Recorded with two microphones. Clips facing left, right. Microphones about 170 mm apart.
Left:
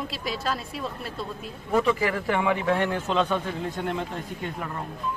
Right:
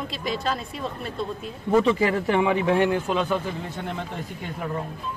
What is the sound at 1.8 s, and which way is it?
A man's voice, 25° right (ahead or behind).